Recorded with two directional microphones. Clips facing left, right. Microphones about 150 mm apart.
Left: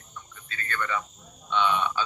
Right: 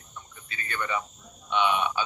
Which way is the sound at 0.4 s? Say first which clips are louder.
Left 1 dB; 15° right (ahead or behind).